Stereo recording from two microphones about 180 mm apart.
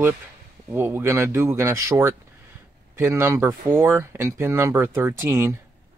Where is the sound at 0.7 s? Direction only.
10° right (ahead or behind).